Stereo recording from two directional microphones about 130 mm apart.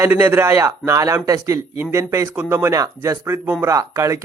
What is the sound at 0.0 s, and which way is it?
Speech, 15° right (ahead or behind).